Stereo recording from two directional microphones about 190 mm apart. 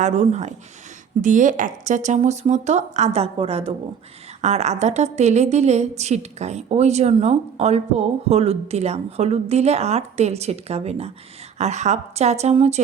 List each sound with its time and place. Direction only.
0.0 s a woman's voice: 35° right (ahead or behind)